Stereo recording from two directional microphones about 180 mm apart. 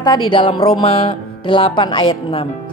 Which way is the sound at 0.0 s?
25° left (ahead or behind).